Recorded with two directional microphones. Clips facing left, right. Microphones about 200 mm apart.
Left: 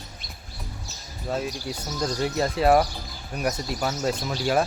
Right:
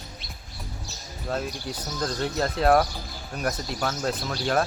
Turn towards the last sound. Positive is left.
turn(degrees=10)  # may be behind; listen again after turning